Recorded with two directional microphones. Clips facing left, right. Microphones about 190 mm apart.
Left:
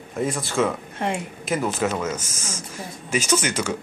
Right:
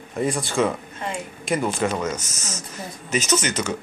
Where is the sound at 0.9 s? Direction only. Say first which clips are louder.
Left 4 dB; 55° left (ahead or behind).